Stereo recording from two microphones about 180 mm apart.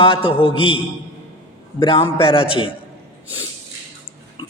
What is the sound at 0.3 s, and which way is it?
Speech, 30° left (ahead or behind).